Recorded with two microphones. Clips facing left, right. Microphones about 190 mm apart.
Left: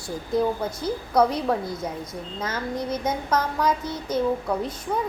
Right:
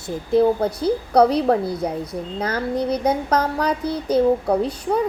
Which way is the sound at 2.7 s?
35° right (ahead or behind).